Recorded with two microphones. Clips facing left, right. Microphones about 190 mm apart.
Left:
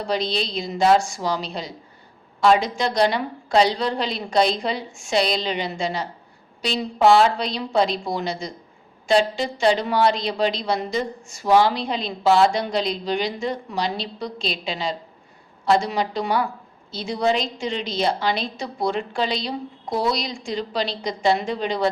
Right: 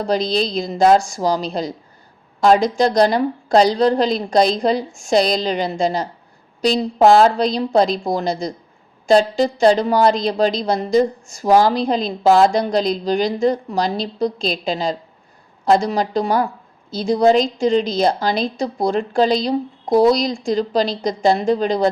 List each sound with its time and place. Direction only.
0.0 s a woman's voice: 40° right (ahead or behind)